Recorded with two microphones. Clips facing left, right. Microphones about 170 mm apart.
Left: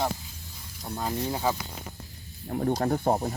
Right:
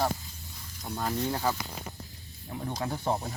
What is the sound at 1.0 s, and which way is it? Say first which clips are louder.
Speech: left 1 dB; 15° left (ahead or behind).